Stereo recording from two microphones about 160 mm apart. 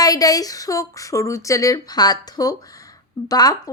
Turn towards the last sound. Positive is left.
turn(degrees=25)  # may be behind; listen again after turning